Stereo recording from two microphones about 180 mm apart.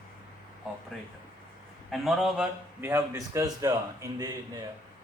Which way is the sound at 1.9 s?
Centre (ahead or behind).